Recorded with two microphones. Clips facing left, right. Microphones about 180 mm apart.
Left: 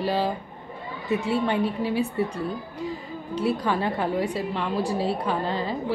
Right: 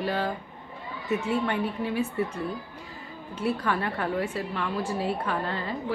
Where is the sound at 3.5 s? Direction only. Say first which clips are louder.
Left 3 dB; 15° left (ahead or behind).